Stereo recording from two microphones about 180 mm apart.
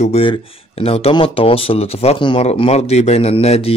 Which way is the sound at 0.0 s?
35° left (ahead or behind).